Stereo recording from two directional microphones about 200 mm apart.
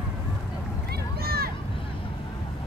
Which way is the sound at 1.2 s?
50° right (ahead or behind).